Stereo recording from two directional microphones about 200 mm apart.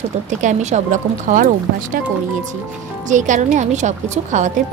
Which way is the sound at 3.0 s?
40° right (ahead or behind).